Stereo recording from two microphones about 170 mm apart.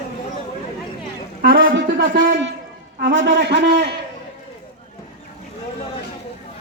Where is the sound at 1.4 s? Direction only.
60° right (ahead or behind); by 3.8 s 90° right.